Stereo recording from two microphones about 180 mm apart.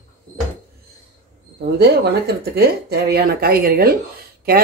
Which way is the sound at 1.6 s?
65° right (ahead or behind).